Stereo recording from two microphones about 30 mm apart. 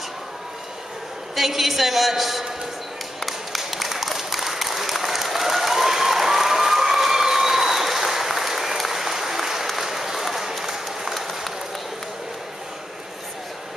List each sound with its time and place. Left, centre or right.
1.3 s a woman's voice: centre
3.2 s a sound: centre
9.8 s applause: centre
11.1 s run: centre